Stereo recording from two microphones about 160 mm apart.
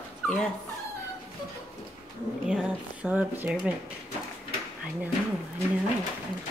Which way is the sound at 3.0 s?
10° right (ahead or behind).